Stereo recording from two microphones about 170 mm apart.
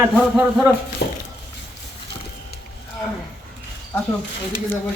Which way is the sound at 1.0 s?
80° left.